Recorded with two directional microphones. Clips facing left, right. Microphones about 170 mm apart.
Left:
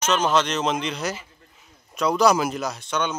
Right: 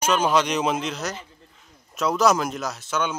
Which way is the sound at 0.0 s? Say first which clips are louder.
Even; 10° right (ahead or behind).